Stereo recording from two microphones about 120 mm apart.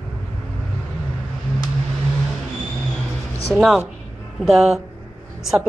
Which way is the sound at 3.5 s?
Centre (ahead or behind).